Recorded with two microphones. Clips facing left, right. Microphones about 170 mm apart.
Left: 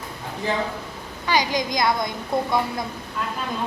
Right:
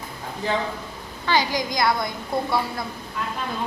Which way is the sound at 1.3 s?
20° left (ahead or behind).